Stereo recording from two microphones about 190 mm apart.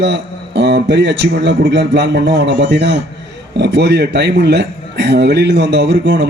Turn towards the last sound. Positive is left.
turn(degrees=-65)  # may be behind; listen again after turning